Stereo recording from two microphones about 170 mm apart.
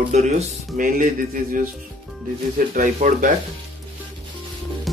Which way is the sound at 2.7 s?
50° right (ahead or behind).